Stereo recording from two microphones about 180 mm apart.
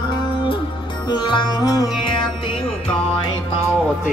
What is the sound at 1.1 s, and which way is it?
Music, 25° left (ahead or behind).